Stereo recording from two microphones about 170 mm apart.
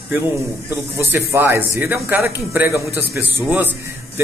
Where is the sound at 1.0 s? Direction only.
15° right (ahead or behind).